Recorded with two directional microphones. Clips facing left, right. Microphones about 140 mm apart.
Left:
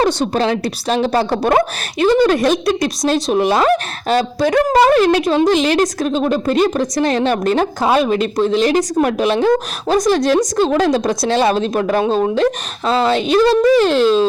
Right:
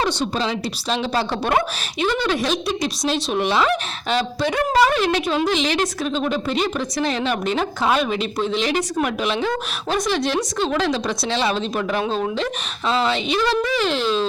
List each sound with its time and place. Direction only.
0.0 s a woman's voice: 55° left (ahead or behind)